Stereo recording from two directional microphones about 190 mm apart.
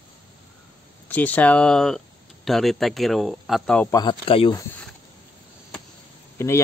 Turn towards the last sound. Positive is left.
turn(degrees=15)  # may be behind; listen again after turning